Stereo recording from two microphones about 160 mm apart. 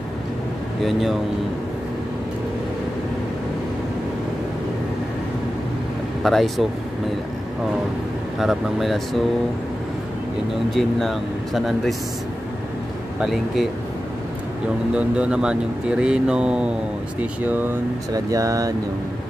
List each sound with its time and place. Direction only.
0.8 s speech: centre (ahead or behind)
6.2 s speech: centre (ahead or behind)
8.4 s speech: centre (ahead or behind)
10.7 s speech: centre (ahead or behind)
13.2 s speech: centre (ahead or behind)
15.0 s speech: 5° right (ahead or behind)